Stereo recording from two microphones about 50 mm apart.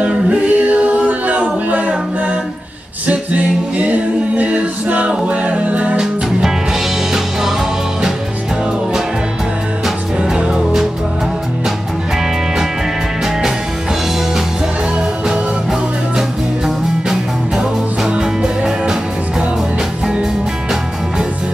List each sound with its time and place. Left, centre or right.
0.0 s a capella: right
10.3 s music: centre
16.2 s music: centre
17.6 s music: centre